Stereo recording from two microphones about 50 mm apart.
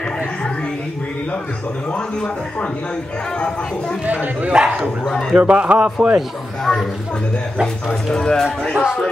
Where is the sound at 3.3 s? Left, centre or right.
Centre.